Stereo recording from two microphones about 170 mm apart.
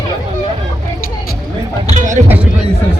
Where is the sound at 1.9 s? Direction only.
45° right (ahead or behind).